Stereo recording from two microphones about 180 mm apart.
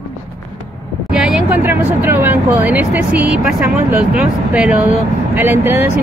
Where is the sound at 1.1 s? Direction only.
5° right (ahead or behind).